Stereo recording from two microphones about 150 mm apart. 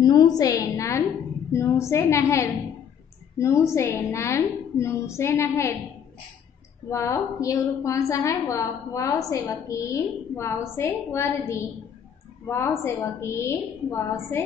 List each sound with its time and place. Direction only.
0.0 s a sound: 25° left (ahead or behind)
0.4 s a woman's voice: 20° left (ahead or behind)
6.9 s a woman's voice: 20° left (ahead or behind)